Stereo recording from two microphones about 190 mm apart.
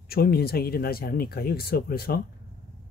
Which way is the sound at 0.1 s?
55° left (ahead or behind).